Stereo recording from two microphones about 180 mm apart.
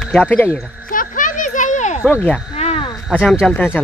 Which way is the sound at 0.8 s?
50° left (ahead or behind).